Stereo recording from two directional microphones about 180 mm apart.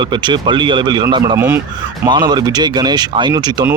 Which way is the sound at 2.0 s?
25° right (ahead or behind).